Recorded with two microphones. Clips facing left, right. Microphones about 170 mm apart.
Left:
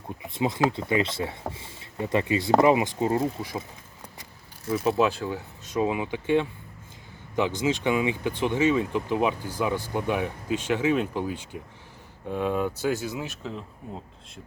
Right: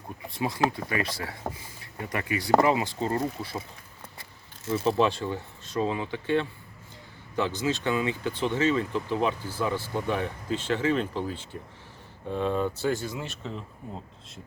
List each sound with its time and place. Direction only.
0.2 s speech: 20° left (ahead or behind)
4.7 s speech: 5° left (ahead or behind)